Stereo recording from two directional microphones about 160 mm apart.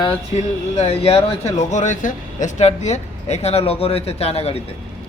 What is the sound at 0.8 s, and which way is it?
Speech, 40° left (ahead or behind).